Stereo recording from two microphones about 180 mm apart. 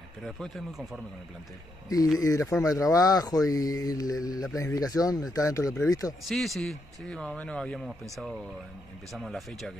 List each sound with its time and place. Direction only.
0.2 s a man's voice: centre (ahead or behind)
2.1 s speech: 15° left (ahead or behind)
6.2 s a man's voice: centre (ahead or behind)
9.1 s a man's voice: centre (ahead or behind)